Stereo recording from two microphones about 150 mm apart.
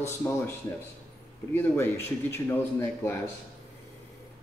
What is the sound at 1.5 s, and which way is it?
Speech, 15° left (ahead or behind).